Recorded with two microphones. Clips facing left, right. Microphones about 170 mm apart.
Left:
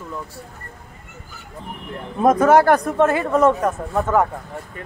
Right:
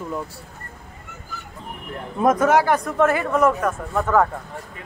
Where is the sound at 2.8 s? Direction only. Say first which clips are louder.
Left 2 dB; 25° left (ahead or behind).